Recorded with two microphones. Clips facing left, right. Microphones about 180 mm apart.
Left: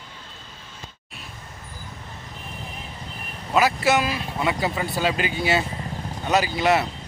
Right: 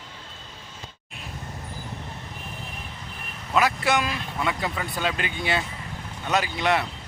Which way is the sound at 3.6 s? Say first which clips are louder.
Left 3 dB; 5° left (ahead or behind).